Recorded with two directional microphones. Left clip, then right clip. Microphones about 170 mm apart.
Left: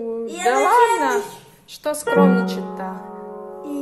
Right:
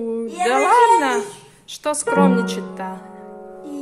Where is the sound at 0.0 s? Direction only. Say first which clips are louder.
Even; 20° right (ahead or behind).